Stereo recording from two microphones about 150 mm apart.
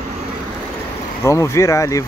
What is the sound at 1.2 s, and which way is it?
Speech, 20° left (ahead or behind).